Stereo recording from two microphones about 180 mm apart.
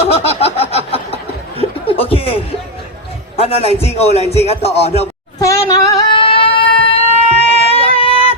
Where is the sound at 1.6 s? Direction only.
30° left (ahead or behind).